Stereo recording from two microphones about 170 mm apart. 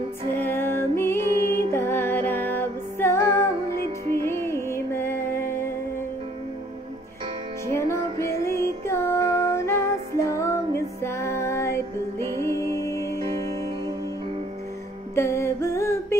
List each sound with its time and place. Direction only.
0.4 s music: 15° left (ahead or behind)
7.6 s music: 15° left (ahead or behind)
15.1 s music: 15° left (ahead or behind)